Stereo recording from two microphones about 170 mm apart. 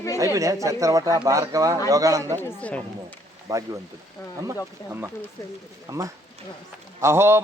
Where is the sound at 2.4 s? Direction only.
10° left (ahead or behind).